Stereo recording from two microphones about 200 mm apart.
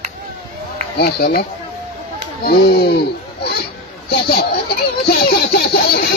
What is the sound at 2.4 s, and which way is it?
Speech, 50° left (ahead or behind).